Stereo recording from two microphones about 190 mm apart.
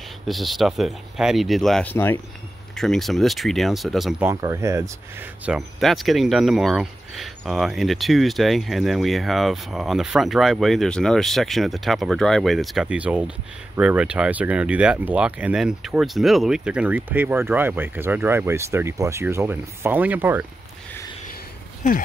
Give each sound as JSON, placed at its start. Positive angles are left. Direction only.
{"t": 0.3, "sound": "speech", "side_deg": 0}
{"t": 4.3, "sound": "speech", "side_deg": -15}
{"t": 5.4, "sound": "speech", "side_deg": 0}